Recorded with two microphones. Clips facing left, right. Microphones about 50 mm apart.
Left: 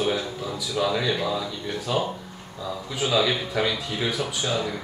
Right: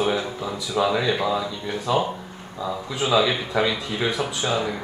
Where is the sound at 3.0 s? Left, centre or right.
Right.